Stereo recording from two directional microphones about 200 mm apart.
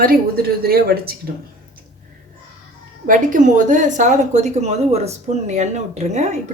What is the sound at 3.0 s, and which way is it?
A woman's voice, 40° right (ahead or behind).